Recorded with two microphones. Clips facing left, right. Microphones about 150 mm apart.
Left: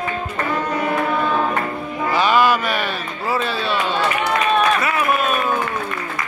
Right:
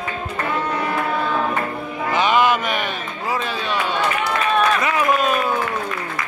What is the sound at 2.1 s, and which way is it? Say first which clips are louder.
Music: left 1 dB; 20° right (ahead or behind).